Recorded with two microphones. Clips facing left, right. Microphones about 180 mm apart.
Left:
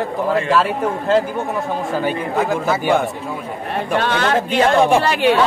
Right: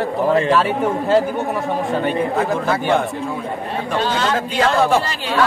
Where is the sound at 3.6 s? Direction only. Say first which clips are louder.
Left 3 dB; 60° left (ahead or behind).